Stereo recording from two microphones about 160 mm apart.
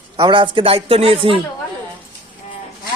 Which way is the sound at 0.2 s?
30° right (ahead or behind).